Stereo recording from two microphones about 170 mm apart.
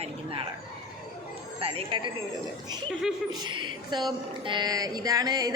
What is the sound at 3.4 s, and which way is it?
A woman's voice, 25° right (ahead or behind).